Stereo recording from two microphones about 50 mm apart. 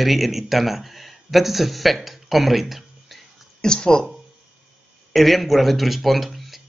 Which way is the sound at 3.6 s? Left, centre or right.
Centre.